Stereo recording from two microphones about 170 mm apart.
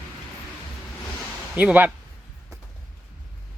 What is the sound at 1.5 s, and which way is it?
Speech, 10° right (ahead or behind).